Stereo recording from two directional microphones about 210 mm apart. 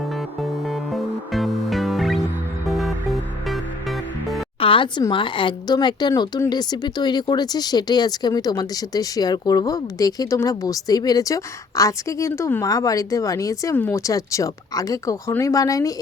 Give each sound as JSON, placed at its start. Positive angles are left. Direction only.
{"t": 0.7, "sound": "music", "side_deg": 0}
{"t": 4.6, "sound": "speech", "side_deg": 25}